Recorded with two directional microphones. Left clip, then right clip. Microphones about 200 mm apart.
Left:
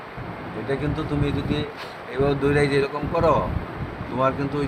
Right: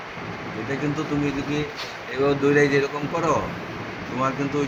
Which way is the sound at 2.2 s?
40° left (ahead or behind).